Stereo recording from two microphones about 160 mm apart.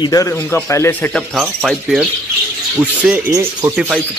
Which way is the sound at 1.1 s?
Centre (ahead or behind).